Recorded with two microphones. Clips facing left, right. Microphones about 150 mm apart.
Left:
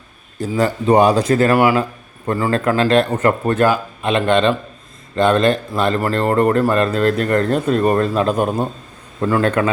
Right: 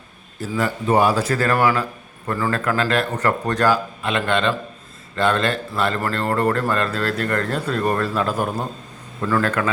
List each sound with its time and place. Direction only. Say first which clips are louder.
0.5 s a man's voice: left 5 dB; 35° left (ahead or behind)
0.9 s speech: left 5 dB; 20° left (ahead or behind)
1.8 s speech: left 5 dB; 25° left (ahead or behind)